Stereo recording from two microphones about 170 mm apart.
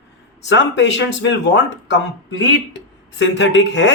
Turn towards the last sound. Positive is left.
turn(degrees=90)